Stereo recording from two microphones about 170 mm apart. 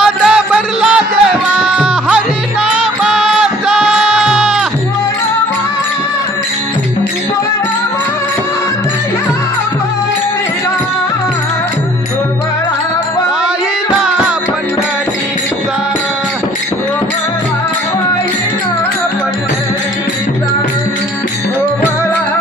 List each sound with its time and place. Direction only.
0.0 s music: 5° right (ahead or behind)
14.0 s music: 5° right (ahead or behind)